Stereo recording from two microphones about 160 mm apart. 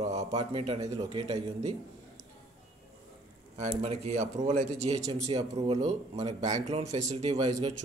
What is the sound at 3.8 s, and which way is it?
Speech, 40° right (ahead or behind).